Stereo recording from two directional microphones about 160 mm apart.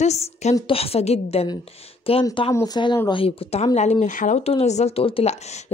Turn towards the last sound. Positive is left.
turn(degrees=45)  # may be behind; listen again after turning